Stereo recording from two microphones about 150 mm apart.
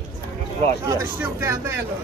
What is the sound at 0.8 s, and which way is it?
Speech, 20° right (ahead or behind).